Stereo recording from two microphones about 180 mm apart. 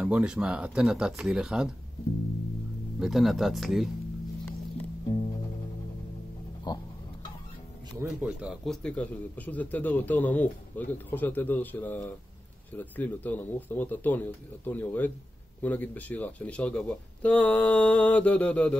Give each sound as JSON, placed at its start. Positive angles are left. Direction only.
{"t": 0.0, "sound": "speech", "side_deg": -5}
{"t": 3.0, "sound": "speech", "side_deg": 0}
{"t": 6.7, "sound": "tick-tock", "side_deg": 25}
{"t": 8.0, "sound": "a man's voice", "side_deg": -5}